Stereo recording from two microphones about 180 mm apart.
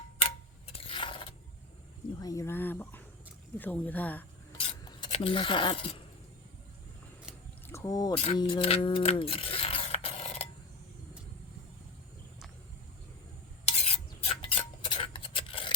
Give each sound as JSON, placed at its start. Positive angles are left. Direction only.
{"t": 0.7, "sound": "a sound", "side_deg": 30}
{"t": 2.1, "sound": "speech", "side_deg": 20}
{"t": 4.9, "sound": "speech", "side_deg": 25}
{"t": 7.7, "sound": "speech", "side_deg": 15}
{"t": 8.4, "sound": "a sound", "side_deg": 25}
{"t": 13.7, "sound": "stir", "side_deg": 35}